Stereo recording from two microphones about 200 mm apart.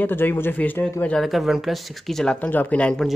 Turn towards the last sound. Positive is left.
turn(degrees=5)  # may be behind; listen again after turning